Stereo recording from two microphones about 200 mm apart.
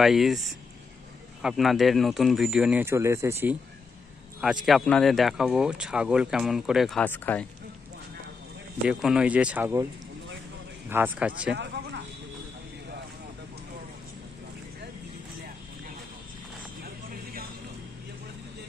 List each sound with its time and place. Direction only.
0.0 s speech: centre (ahead or behind)
4.4 s speech: centre (ahead or behind)
8.8 s speech: 5° right (ahead or behind)
10.9 s speech: 10° right (ahead or behind)
11.5 s a sound: 60° right (ahead or behind)